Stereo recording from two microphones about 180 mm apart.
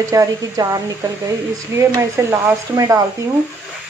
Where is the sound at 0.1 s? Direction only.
20° right (ahead or behind).